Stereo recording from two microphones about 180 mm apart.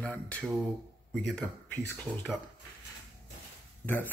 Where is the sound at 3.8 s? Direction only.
10° left (ahead or behind).